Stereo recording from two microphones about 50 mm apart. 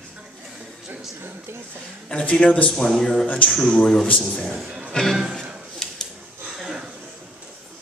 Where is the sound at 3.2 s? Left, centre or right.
Left.